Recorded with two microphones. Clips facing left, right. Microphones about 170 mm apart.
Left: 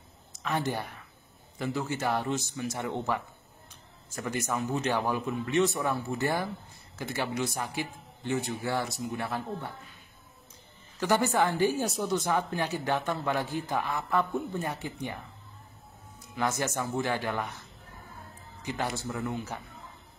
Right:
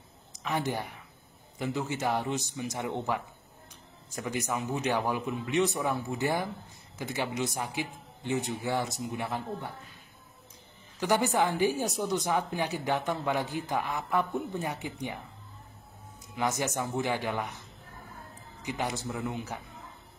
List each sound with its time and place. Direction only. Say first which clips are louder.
0.4 s a woman's voice: even; 15° right (ahead or behind)
4.1 s a woman's voice: even; 15° right (ahead or behind)
11.0 s a woman's voice: left 1 dB; 15° right (ahead or behind)
16.3 s a woman's voice: even; 15° right (ahead or behind)
18.6 s a woman's voice: even; 15° right (ahead or behind)